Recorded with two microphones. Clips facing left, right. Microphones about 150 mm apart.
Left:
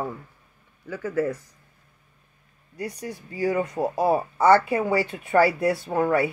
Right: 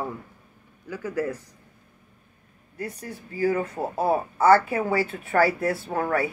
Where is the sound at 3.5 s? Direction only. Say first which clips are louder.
Left 1 dB; 15° left (ahead or behind).